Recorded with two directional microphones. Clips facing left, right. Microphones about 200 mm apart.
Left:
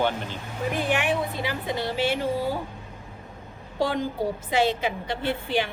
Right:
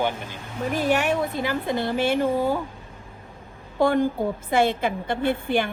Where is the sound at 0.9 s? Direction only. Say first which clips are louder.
Right 4 dB; 45° right (ahead or behind).